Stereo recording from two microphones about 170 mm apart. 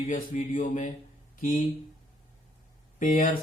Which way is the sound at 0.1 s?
50° left (ahead or behind).